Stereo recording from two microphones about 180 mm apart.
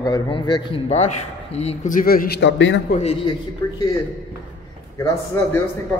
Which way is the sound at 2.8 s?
40° left (ahead or behind).